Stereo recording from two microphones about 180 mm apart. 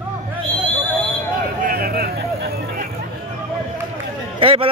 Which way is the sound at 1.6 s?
55° right (ahead or behind).